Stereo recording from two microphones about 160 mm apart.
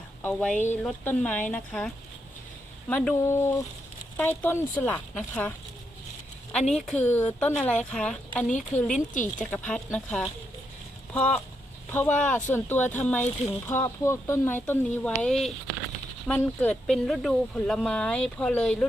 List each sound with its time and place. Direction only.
0.2 s speech: 10° left (ahead or behind)
0.5 s speech: 50° left (ahead or behind)
0.8 s speech: 10° left (ahead or behind)
2.9 s speech: 5° left (ahead or behind)
3.2 s speech: 20° left (ahead or behind)
6.7 s speech: centre (ahead or behind)
8.4 s speech: 50° left (ahead or behind)
9.2 s speech: 10° left (ahead or behind)